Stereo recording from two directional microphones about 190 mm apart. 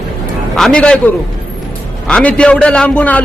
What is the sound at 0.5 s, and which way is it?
Speech, 5° left (ahead or behind).